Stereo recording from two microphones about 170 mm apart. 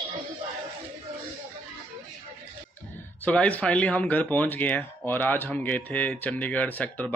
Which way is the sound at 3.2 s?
10° left (ahead or behind).